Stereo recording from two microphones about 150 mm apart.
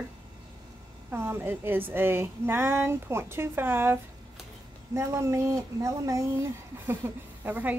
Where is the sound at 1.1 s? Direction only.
15° right (ahead or behind).